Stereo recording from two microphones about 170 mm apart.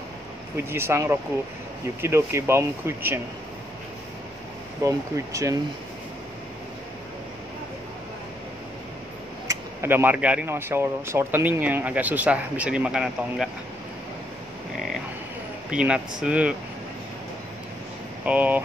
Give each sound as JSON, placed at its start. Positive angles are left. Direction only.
{"t": 0.6, "sound": "speech", "side_deg": -15}
{"t": 4.8, "sound": "speech", "side_deg": -20}
{"t": 9.5, "sound": "speech", "side_deg": -15}
{"t": 15.7, "sound": "speech", "side_deg": -5}
{"t": 18.2, "sound": "speech", "side_deg": -10}